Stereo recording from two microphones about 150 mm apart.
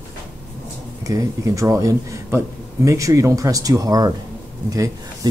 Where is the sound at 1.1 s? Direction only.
20° right (ahead or behind).